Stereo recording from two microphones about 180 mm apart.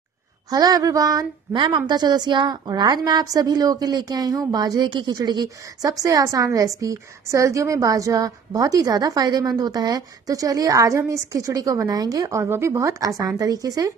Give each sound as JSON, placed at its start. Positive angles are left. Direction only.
{"t": 0.5, "sound": "a woman's voice", "side_deg": -20}